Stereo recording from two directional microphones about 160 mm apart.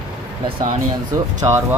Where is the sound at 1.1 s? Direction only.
20° right (ahead or behind).